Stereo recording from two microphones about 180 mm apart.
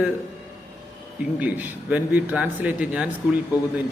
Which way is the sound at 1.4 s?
10° right (ahead or behind).